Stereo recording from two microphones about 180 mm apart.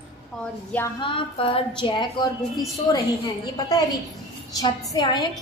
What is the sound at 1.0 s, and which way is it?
A woman's voice, 30° left (ahead or behind).